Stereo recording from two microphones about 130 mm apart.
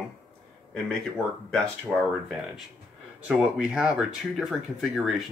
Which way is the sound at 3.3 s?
10° right (ahead or behind).